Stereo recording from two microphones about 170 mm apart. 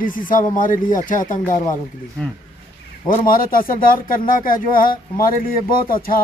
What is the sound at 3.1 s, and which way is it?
Speech, 55° left (ahead or behind).